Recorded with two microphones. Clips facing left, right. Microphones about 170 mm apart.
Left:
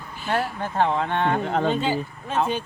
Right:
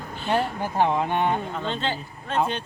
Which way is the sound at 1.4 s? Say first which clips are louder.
Left 7 dB; 70° left (ahead or behind).